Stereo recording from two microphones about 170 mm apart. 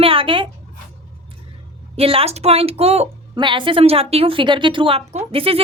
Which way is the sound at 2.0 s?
35° right (ahead or behind).